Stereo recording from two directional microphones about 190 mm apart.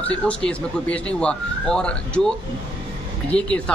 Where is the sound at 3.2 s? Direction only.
5° left (ahead or behind).